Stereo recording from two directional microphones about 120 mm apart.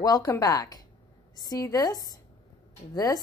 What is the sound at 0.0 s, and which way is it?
A woman's voice, 30° left (ahead or behind).